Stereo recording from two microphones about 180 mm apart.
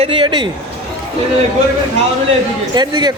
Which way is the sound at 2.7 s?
25° right (ahead or behind).